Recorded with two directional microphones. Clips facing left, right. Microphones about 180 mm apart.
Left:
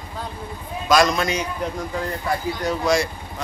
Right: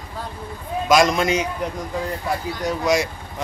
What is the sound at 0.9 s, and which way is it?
Speech, 20° right (ahead or behind).